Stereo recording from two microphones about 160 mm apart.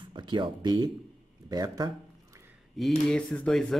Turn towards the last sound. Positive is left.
turn(degrees=5)  # may be behind; listen again after turning